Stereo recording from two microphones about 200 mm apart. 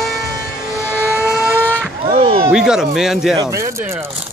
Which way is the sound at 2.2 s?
25° right (ahead or behind).